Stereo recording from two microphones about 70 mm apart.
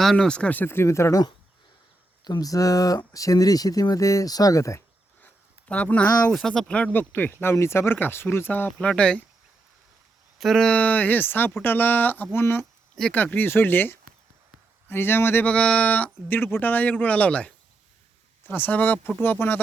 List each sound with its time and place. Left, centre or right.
0.0 s speech: centre
0.6 s speech: left
2.2 s speech: left
5.2 s a sound: centre
6.3 s speech: centre
6.7 s speech: centre
6.9 s speech: left
8.8 s speech: centre
10.3 s speech: centre
10.6 s speech: centre
15.4 s speech: centre